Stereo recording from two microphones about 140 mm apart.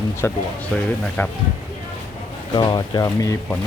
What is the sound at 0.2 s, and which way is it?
Speech, 20° left (ahead or behind).